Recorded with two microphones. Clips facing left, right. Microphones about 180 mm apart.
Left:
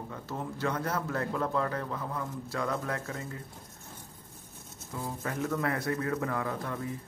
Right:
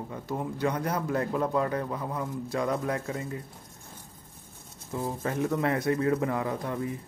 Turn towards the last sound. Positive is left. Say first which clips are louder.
# right 3 dB
turn(degrees=-20)  # may be behind; listen again after turning